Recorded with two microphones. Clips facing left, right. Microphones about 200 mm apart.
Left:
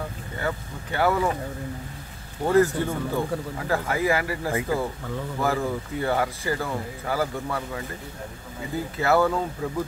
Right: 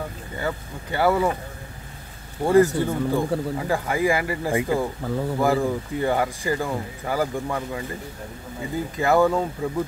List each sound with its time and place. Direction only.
0.4 s speech: 10° right (ahead or behind)
2.4 s speech: 10° right (ahead or behind)
5.0 s speech: 35° right (ahead or behind)
5.4 s speech: 15° right (ahead or behind)
9.0 s speech: 15° right (ahead or behind)